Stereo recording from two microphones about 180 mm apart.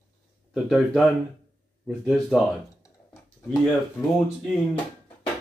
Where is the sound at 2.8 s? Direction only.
15° left (ahead or behind).